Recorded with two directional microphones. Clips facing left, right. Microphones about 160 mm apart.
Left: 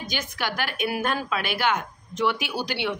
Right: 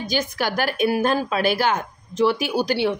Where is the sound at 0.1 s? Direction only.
40° right (ahead or behind).